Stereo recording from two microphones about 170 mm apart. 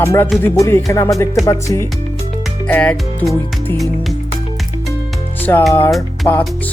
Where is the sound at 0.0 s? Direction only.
15° left (ahead or behind).